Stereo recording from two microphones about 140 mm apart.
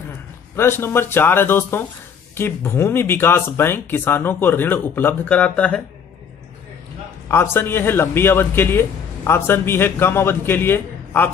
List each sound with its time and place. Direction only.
0.6 s a man's voice: 15° left (ahead or behind)
7.2 s a man's voice: 15° left (ahead or behind)